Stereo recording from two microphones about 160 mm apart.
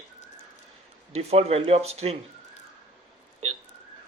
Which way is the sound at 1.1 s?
40° right (ahead or behind).